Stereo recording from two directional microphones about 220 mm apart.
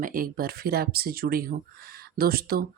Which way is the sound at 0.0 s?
40° right (ahead or behind).